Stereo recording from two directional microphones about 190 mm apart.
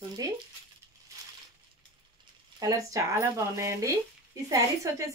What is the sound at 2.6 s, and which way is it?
Speech, 15° right (ahead or behind).